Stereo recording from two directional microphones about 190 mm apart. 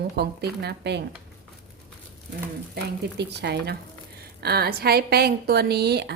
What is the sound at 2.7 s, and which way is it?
Speech, 60° right (ahead or behind).